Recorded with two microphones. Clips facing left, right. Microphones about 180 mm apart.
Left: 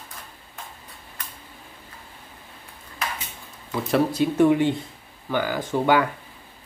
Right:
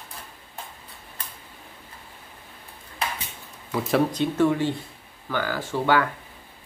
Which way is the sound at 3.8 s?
5° left (ahead or behind).